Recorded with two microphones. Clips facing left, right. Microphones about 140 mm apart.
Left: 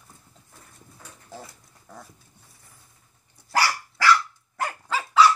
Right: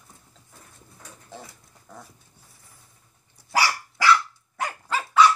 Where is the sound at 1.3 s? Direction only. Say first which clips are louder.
Left 1 dB; centre (ahead or behind).